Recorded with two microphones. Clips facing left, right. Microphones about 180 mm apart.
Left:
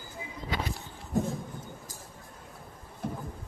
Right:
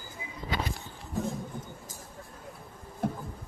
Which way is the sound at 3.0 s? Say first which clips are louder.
Right 4 dB; 60° right (ahead or behind).